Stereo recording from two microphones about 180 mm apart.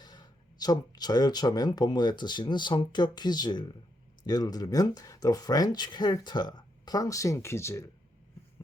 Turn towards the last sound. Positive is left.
turn(degrees=15)  # may be behind; listen again after turning